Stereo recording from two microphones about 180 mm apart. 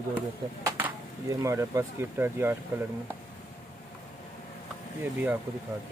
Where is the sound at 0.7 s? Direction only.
15° right (ahead or behind).